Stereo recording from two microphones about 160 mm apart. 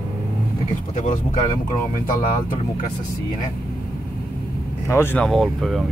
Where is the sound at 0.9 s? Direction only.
50° left (ahead or behind).